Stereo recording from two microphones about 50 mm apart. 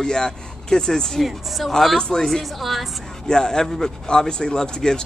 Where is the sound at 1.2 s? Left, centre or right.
Centre.